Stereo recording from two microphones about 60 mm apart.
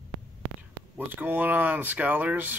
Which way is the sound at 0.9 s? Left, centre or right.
Right.